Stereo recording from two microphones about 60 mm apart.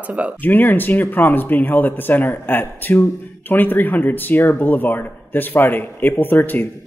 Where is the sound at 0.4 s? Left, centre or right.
Left.